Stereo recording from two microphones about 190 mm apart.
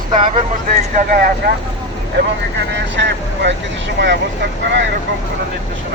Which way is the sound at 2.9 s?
70° right (ahead or behind).